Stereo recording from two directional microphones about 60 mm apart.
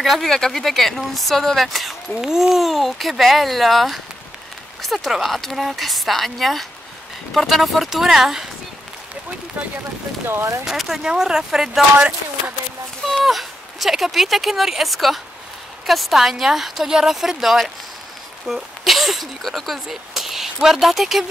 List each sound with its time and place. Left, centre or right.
0.0 s speech: centre
10.2 s speech: right
10.6 s speech: centre
13.2 s speech: centre